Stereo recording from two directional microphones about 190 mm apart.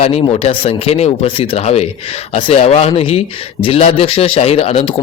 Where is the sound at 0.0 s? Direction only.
30° left (ahead or behind).